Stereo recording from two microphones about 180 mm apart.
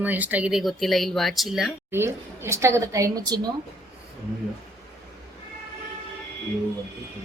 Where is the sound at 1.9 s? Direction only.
15° right (ahead or behind).